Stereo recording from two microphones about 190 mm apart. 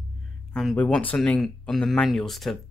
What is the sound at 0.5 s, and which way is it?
Speech, 5° left (ahead or behind).